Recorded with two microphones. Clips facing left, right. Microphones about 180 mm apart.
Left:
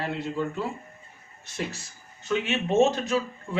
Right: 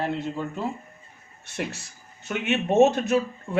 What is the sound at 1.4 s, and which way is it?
A man's voice, 65° right (ahead or behind).